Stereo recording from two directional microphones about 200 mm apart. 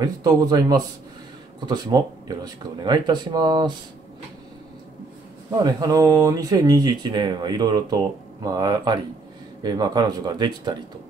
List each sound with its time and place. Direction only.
0.0 s speech: 20° right (ahead or behind)
5.5 s speech: 20° right (ahead or behind)